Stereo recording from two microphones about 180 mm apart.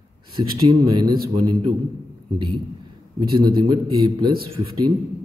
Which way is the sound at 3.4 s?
25° right (ahead or behind).